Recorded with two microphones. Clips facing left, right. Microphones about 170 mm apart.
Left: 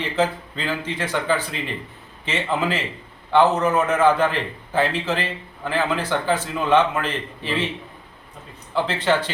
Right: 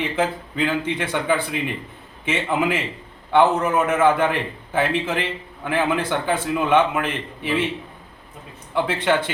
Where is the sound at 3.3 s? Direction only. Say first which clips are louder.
Even; 10° right (ahead or behind).